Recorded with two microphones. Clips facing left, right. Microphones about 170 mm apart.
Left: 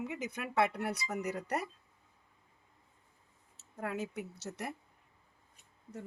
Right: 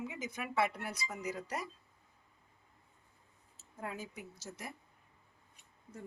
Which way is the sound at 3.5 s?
75° left (ahead or behind).